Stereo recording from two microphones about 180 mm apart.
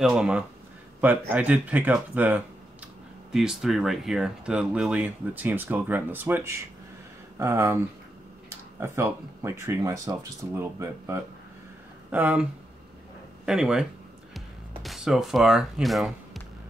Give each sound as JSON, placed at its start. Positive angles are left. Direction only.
{"t": 0.0, "sound": "speech", "side_deg": -5}
{"t": 13.5, "sound": "speech", "side_deg": -5}